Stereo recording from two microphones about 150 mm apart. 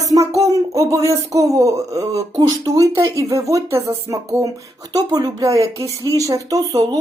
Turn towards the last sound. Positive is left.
turn(degrees=-25)  # may be behind; listen again after turning